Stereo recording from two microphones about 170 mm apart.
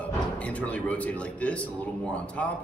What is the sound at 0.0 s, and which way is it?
Speech, 10° left (ahead or behind).